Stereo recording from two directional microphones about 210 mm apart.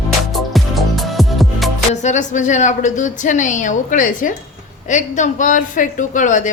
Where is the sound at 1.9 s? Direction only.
35° left (ahead or behind).